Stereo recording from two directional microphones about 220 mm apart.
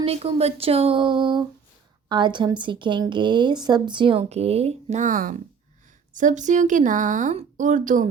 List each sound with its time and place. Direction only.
0.0 s a woman's voice: 25° right (ahead or behind)